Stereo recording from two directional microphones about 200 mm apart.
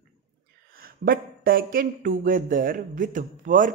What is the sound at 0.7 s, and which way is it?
Speech, 45° right (ahead or behind).